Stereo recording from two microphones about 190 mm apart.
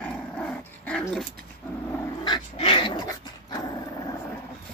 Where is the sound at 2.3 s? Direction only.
30° left (ahead or behind).